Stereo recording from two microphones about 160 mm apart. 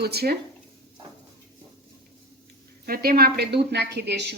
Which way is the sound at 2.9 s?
70° right (ahead or behind).